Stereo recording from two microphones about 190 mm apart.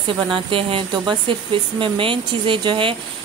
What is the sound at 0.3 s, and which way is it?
Speech, 30° right (ahead or behind).